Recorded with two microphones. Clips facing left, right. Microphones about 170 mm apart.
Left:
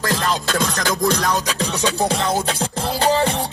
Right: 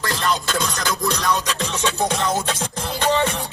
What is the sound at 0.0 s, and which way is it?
Music, 40° left (ahead or behind).